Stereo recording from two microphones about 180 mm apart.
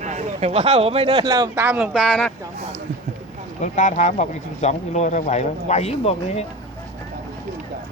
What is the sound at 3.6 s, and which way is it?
Speech, 45° left (ahead or behind).